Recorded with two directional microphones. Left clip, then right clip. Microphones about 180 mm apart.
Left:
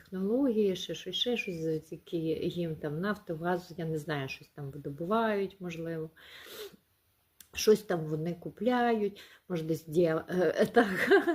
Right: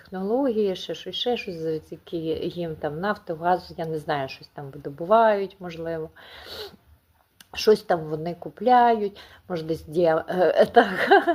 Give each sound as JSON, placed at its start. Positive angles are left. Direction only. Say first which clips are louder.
{"t": 0.1, "sound": "speech", "louder": "right 6 dB", "side_deg": 20}